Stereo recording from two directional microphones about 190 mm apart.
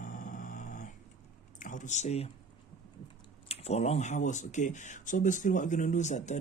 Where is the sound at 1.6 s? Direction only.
40° left (ahead or behind).